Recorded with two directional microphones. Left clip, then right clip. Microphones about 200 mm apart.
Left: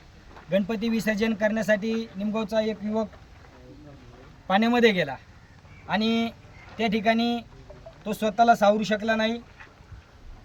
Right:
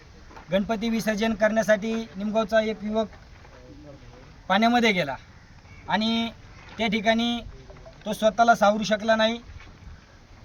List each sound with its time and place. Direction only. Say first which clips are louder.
0.5 s speech: even; 5° left (ahead or behind)
4.4 s speech: even; centre (ahead or behind)